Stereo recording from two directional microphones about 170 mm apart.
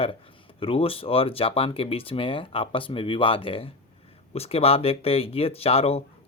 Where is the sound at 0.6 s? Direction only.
35° left (ahead or behind).